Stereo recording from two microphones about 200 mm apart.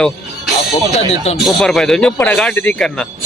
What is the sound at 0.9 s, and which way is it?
Speech, 35° left (ahead or behind).